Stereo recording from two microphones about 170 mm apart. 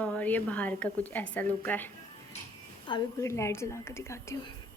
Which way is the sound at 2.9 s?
20° left (ahead or behind).